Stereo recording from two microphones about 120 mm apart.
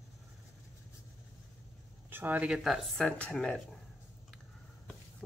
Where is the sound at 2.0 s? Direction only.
15° right (ahead or behind); by 3.1 s centre (ahead or behind).